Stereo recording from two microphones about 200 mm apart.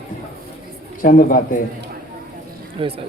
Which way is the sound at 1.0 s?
45° left (ahead or behind).